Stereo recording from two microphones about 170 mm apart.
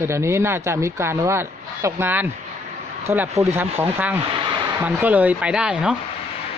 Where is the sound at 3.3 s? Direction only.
40° right (ahead or behind).